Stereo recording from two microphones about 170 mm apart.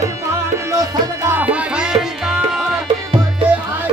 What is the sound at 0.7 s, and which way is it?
Music, 20° right (ahead or behind).